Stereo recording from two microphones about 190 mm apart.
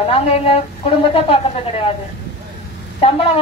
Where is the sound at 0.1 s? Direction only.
30° left (ahead or behind).